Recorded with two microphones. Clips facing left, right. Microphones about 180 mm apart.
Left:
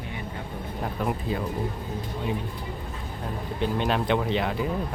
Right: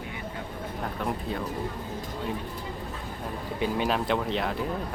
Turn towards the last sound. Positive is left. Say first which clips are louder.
# left 3 dB
turn(degrees=0)  # may be behind; listen again after turning